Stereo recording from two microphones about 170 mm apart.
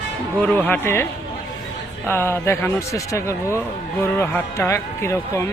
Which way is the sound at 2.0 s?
15° left (ahead or behind).